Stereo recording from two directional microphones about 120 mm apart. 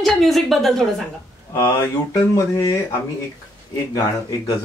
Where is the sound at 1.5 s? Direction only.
30° left (ahead or behind).